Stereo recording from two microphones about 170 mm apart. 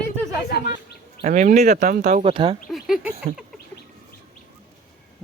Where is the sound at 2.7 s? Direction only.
Centre (ahead or behind).